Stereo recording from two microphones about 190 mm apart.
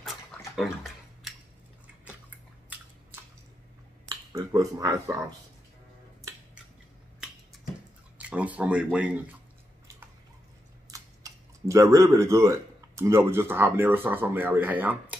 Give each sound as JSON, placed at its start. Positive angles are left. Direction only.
{"t": 2.0, "sound": "squish", "side_deg": -10}
{"t": 4.1, "sound": "speech", "side_deg": -20}
{"t": 8.2, "sound": "speech", "side_deg": -5}
{"t": 10.9, "sound": "speech", "side_deg": -15}